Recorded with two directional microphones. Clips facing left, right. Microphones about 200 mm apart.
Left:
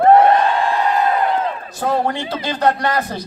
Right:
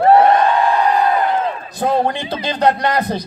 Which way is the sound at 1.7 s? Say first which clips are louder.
Right 2 dB; 20° right (ahead or behind).